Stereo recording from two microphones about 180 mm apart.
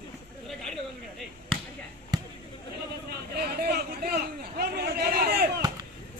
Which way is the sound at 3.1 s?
60° right (ahead or behind).